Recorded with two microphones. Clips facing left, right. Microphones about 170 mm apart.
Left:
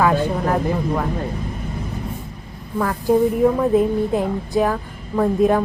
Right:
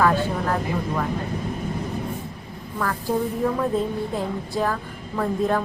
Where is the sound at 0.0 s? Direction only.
15° left (ahead or behind).